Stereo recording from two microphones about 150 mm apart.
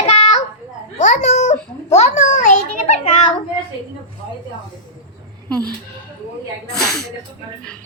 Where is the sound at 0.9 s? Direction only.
55° left (ahead or behind).